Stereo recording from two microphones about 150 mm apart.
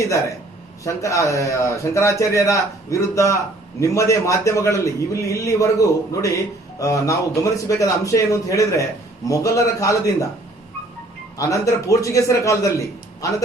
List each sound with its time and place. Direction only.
0.0 s a man's voice: 20° left (ahead or behind)
11.3 s a man's voice: 20° left (ahead or behind)